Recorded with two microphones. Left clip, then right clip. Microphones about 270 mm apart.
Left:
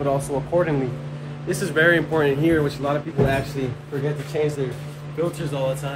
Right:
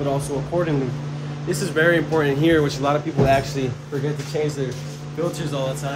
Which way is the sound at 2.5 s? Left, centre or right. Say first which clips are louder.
Right 3 dB; centre.